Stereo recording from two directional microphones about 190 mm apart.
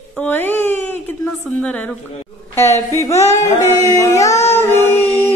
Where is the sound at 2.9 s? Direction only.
15° left (ahead or behind).